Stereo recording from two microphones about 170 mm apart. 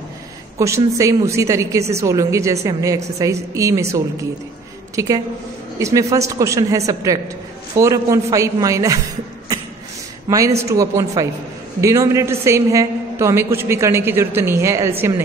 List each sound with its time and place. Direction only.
0.6 s a man's voice: 20° right (ahead or behind)
10.7 s a man's voice: 20° right (ahead or behind)